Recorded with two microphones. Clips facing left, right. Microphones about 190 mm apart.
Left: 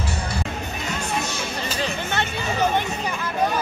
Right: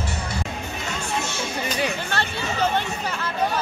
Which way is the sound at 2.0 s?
15° left (ahead or behind).